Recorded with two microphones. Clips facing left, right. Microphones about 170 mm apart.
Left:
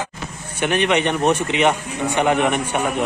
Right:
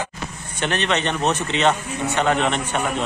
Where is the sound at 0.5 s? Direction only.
10° left (ahead or behind).